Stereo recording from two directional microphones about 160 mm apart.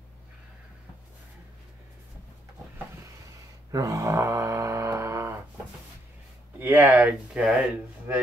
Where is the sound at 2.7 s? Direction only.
20° right (ahead or behind).